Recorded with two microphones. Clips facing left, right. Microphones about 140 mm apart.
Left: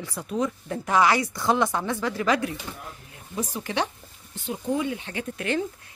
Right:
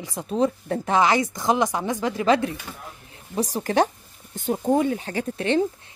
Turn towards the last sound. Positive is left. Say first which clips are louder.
# right 5 dB
turn(degrees=-30)  # may be behind; listen again after turning